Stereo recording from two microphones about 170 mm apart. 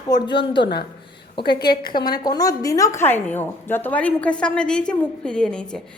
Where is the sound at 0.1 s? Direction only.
30° left (ahead or behind).